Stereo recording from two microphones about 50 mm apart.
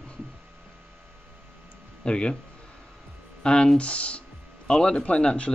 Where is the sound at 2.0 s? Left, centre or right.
Centre.